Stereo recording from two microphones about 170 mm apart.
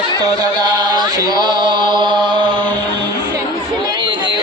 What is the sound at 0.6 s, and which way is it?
Chant, 25° right (ahead or behind).